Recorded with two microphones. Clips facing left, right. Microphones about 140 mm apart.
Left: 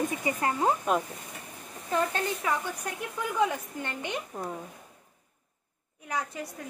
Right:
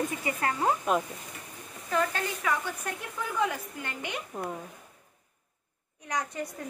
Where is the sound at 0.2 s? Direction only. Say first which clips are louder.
Left 2 dB; 20° left (ahead or behind).